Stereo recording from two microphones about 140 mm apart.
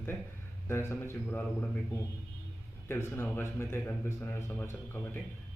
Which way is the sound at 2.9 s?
15° left (ahead or behind).